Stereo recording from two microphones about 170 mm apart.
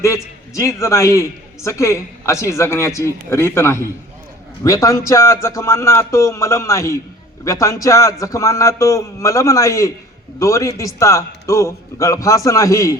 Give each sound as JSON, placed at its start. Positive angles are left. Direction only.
{"t": 0.0, "sound": "a man's voice", "side_deg": 15}